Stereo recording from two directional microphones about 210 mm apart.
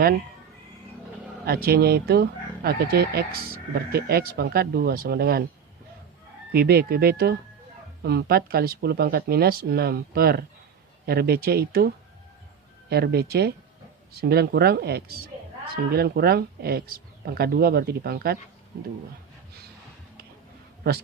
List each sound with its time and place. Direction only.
1.5 s speech: 45° right (ahead or behind)
6.5 s speech: 45° right (ahead or behind)
12.9 s speech: 50° right (ahead or behind)